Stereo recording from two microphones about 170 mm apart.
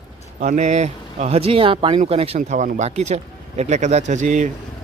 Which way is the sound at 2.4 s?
50° right (ahead or behind).